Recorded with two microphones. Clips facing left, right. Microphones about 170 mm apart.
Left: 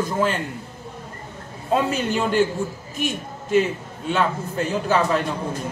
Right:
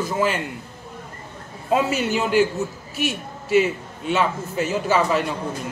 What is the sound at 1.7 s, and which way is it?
A man's voice, 5° right (ahead or behind).